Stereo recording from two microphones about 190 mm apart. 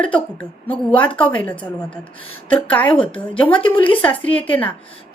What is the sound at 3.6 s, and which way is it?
Speech, 25° left (ahead or behind).